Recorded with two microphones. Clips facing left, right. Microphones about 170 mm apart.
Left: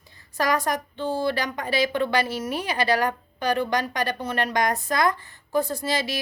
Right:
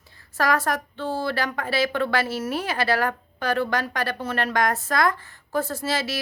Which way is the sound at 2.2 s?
5° right (ahead or behind).